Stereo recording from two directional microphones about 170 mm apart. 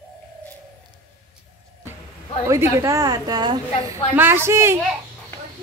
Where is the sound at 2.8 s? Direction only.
20° right (ahead or behind).